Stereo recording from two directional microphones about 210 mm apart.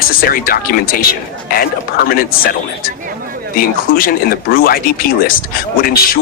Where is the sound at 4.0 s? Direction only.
45° left (ahead or behind).